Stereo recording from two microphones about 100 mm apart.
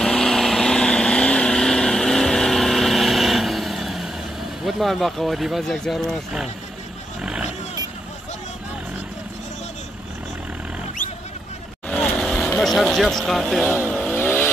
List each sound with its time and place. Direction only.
0.0 s vehicle: 5° left (ahead or behind)
4.6 s speech: centre (ahead or behind)
7.2 s vehicle: 10° right (ahead or behind)
12.2 s speech: 5° left (ahead or behind)
13.8 s vehicle: 5° left (ahead or behind)
14.1 s vehicle: 20° left (ahead or behind)